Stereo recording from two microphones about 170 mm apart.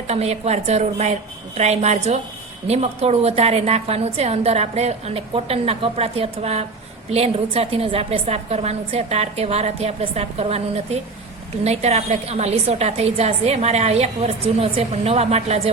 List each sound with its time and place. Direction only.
0.1 s a woman's voice: 40° right (ahead or behind)
11.6 s a woman's voice: 40° right (ahead or behind)